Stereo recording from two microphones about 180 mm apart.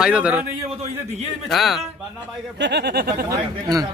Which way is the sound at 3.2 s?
20° right (ahead or behind).